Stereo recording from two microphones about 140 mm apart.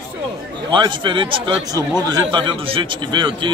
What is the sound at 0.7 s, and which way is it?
Speech, 35° right (ahead or behind).